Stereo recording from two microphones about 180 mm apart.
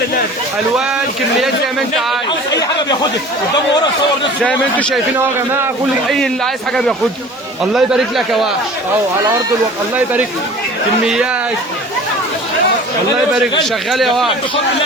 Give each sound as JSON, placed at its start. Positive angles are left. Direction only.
{"t": 2.5, "sound": "a sound", "side_deg": 20}
{"t": 4.4, "sound": "speech", "side_deg": 5}
{"t": 6.1, "sound": "speech", "side_deg": 0}
{"t": 9.9, "sound": "speech", "side_deg": -10}
{"t": 13.7, "sound": "speech", "side_deg": 0}